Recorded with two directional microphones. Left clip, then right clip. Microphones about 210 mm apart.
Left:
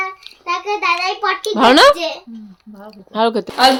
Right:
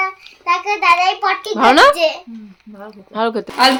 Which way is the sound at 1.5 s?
15° left (ahead or behind).